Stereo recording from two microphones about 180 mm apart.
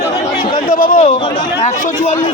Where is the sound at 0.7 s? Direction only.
50° left (ahead or behind).